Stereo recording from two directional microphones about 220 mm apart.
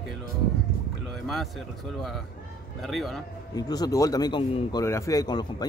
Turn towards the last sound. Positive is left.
turn(degrees=15)  # may be behind; listen again after turning